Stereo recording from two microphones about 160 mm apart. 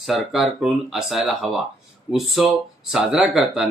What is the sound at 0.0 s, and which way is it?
Speech, centre (ahead or behind).